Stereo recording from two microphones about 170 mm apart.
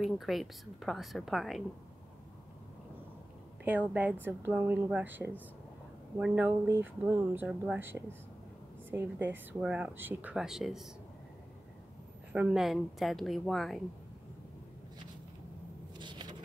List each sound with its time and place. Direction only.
0.0 s a woman's voice: centre (ahead or behind)
3.6 s speech: 10° right (ahead or behind)
12.3 s a woman's voice: 5° right (ahead or behind)
16.0 s vehicle: 25° right (ahead or behind)